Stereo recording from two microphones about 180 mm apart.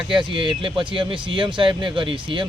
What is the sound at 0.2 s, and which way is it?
Speech, 30° right (ahead or behind).